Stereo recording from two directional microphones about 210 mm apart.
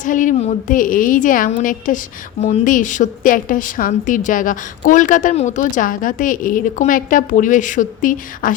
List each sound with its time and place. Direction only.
0.0 s a woman's voice: 40° left (ahead or behind)